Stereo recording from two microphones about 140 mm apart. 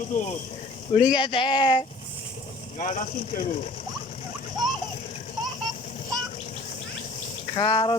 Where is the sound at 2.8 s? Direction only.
70° left (ahead or behind).